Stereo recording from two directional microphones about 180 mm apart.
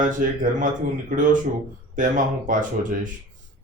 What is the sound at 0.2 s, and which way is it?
Speech, 50° right (ahead or behind).